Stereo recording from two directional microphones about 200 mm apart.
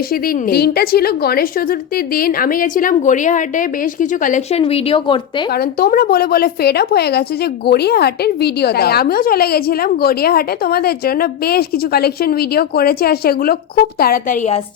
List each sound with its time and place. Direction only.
0.1 s a woman's voice: 45° left (ahead or behind); by 5.2 s 25° left (ahead or behind)
5.5 s a woman's voice: 50° left (ahead or behind)